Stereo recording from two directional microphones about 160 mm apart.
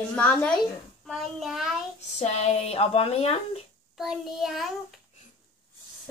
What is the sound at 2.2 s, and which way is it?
Speech, 45° left (ahead or behind).